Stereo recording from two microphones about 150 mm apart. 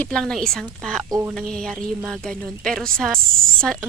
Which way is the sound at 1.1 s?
15° right (ahead or behind).